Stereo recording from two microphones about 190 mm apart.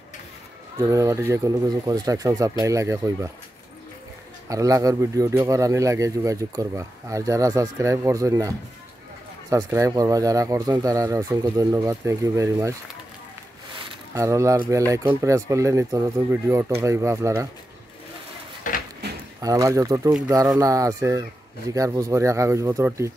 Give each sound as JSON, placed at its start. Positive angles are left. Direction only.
{"t": 0.7, "sound": "speech", "side_deg": -15}
{"t": 4.5, "sound": "speech", "side_deg": -15}
{"t": 14.1, "sound": "speech", "side_deg": -15}
{"t": 18.6, "sound": "a sound", "side_deg": 45}
{"t": 19.4, "sound": "speech", "side_deg": -20}